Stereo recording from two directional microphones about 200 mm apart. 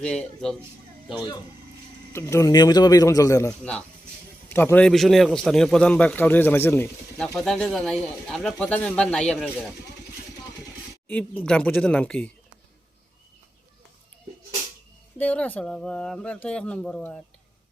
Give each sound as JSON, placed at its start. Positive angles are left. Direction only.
{"t": 0.0, "sound": "a man's voice", "side_deg": 5}
{"t": 2.1, "sound": "a man's voice", "side_deg": 15}
{"t": 3.6, "sound": "a man's voice", "side_deg": 5}
{"t": 11.1, "sound": "a man's voice", "side_deg": 5}
{"t": 15.2, "sound": "a man's voice", "side_deg": 5}